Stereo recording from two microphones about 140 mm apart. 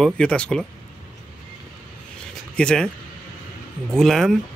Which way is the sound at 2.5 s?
5° left (ahead or behind).